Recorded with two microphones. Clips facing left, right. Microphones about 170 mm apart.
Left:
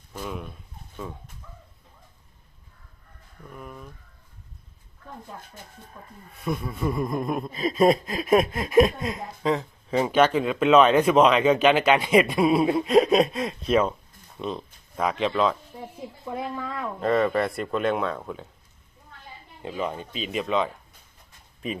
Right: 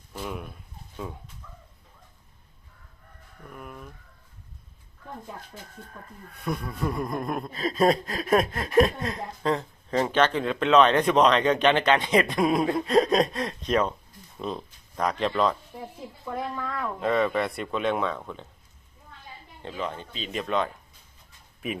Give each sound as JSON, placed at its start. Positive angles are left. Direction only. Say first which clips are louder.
{"t": 0.1, "sound": "speech", "louder": "left 1 dB", "side_deg": -5}
{"t": 3.5, "sound": "speech", "louder": "left 1 dB", "side_deg": -5}
{"t": 6.3, "sound": "speech", "louder": "left 2 dB", "side_deg": 0}
{"t": 16.2, "sound": "speech", "louder": "even", "side_deg": 15}
{"t": 17.0, "sound": "speech", "louder": "left 2 dB", "side_deg": 0}
{"t": 19.6, "sound": "speech", "louder": "left 3 dB", "side_deg": 10}